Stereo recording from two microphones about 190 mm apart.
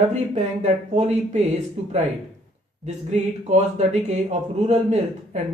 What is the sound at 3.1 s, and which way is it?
Speech, 35° right (ahead or behind).